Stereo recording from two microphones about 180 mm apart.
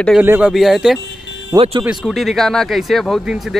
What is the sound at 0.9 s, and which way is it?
Music, 75° left (ahead or behind).